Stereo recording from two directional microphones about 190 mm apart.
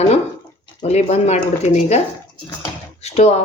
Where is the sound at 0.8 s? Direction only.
35° left (ahead or behind).